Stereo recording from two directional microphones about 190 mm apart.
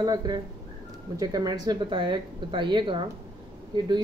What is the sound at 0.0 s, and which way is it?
A woman's voice, 20° right (ahead or behind).